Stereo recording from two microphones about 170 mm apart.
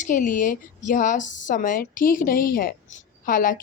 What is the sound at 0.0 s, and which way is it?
A woman's voice, 50° left (ahead or behind).